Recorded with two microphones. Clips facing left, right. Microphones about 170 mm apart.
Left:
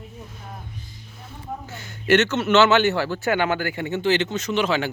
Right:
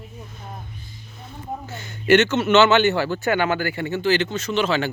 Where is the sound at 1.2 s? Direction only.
10° left (ahead or behind).